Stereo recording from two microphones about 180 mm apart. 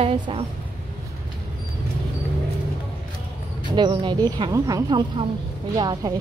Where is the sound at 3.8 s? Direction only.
25° right (ahead or behind).